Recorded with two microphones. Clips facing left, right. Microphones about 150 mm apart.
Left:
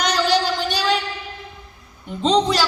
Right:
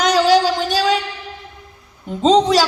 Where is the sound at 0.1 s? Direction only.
90° right.